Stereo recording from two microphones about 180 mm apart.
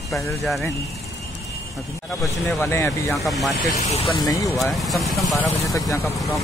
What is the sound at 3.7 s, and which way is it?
Speech, 40° left (ahead or behind).